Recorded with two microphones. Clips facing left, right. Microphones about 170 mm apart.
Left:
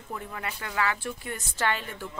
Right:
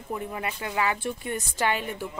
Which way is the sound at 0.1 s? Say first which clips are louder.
Right 4 dB; 20° right (ahead or behind).